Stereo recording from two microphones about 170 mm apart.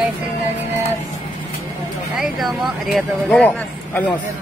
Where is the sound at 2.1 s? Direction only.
Centre (ahead or behind).